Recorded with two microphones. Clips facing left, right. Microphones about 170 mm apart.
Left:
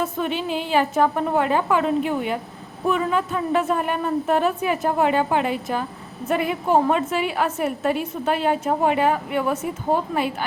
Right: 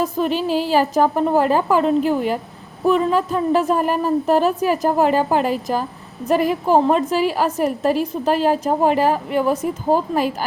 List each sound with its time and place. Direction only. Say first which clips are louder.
0.0 s a woman's voice: right 5 dB; 35° right (ahead or behind)